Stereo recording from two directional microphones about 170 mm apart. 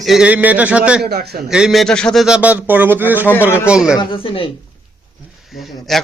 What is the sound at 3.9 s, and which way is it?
Speech, 30° left (ahead or behind).